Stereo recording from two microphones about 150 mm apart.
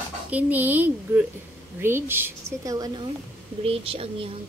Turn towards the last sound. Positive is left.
turn(degrees=-40)  # may be behind; listen again after turning